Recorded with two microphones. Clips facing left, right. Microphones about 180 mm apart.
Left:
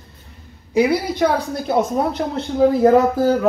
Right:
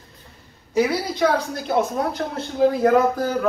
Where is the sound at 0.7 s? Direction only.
10° left (ahead or behind).